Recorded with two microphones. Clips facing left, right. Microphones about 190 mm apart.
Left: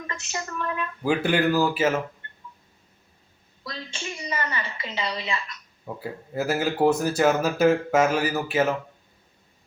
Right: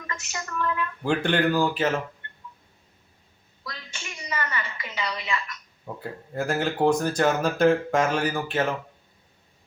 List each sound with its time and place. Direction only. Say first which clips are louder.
0.3 s a woman's voice: right 1 dB; 25° left (ahead or behind)
1.0 s speech: left 1 dB; 5° left (ahead or behind)
3.6 s a sound: left 5 dB; 30° left (ahead or behind)
5.8 s speech: left 2 dB; 5° left (ahead or behind)